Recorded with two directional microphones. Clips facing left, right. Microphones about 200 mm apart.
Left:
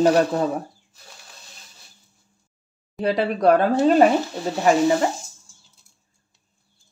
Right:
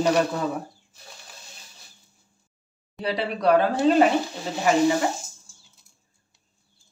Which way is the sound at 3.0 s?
50° left (ahead or behind).